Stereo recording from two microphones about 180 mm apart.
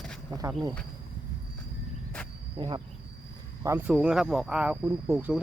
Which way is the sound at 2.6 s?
25° right (ahead or behind).